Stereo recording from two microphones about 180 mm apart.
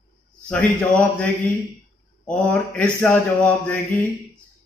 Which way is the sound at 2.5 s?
10° left (ahead or behind).